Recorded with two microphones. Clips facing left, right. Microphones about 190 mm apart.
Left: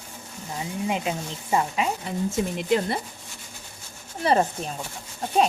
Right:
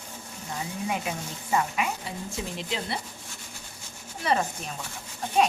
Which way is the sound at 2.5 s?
50° left (ahead or behind).